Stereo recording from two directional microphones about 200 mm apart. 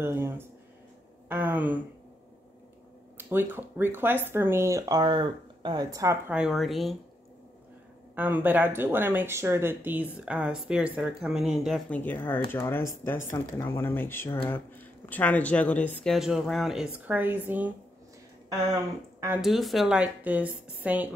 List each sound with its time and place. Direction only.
0.0 s speech: 10° right (ahead or behind)
3.2 s speech: 10° right (ahead or behind)
8.2 s speech: 10° right (ahead or behind)
19.1 s a sound: 10° right (ahead or behind)
19.4 s speech: centre (ahead or behind)